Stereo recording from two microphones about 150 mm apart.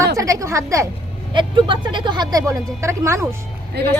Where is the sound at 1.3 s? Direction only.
35° right (ahead or behind).